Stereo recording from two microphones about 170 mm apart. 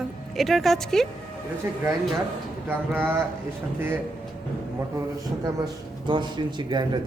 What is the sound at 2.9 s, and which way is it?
Speech, 10° right (ahead or behind).